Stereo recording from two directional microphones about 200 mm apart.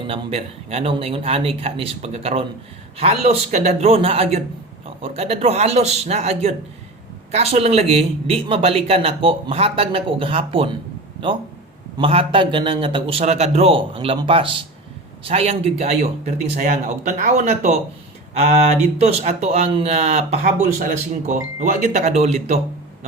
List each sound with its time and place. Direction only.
0.1 s speech: 30° right (ahead or behind)
11.9 s speech: 25° right (ahead or behind)
18.9 s speech: 30° right (ahead or behind)